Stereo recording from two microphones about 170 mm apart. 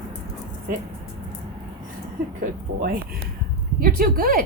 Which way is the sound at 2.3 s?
55° right (ahead or behind).